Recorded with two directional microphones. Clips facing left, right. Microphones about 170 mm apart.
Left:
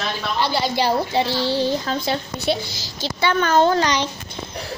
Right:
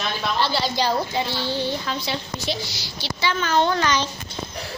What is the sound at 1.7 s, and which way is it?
A woman's voice, 45° left (ahead or behind).